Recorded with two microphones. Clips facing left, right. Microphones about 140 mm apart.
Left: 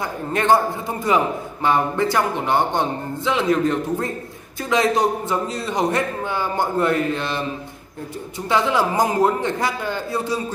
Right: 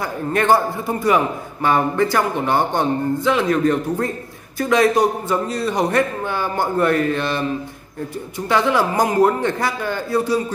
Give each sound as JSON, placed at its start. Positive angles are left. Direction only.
{"t": 0.0, "sound": "a man's voice", "side_deg": 20}
{"t": 8.5, "sound": "a man's voice", "side_deg": 20}